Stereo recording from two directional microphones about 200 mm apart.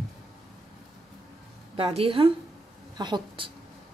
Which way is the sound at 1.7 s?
30° right (ahead or behind).